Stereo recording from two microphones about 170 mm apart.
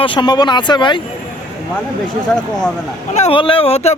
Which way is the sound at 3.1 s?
35° left (ahead or behind).